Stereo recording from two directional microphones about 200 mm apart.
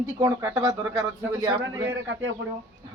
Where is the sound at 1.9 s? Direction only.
65° right (ahead or behind).